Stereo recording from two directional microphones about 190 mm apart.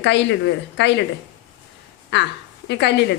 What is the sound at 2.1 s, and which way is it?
Speech, 65° left (ahead or behind).